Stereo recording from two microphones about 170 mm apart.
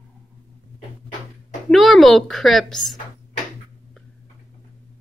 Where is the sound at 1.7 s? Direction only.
Centre (ahead or behind).